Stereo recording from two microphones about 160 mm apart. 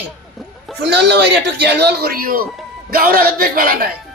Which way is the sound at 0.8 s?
90° right.